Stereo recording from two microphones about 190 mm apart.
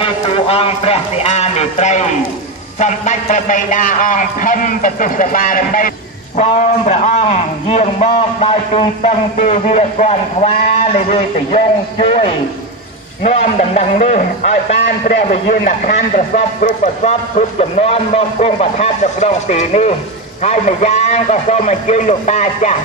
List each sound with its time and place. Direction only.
0.0 s a man's voice: 30° left (ahead or behind); by 6.4 s 45° left (ahead or behind)
6.9 s a man's voice: 35° left (ahead or behind)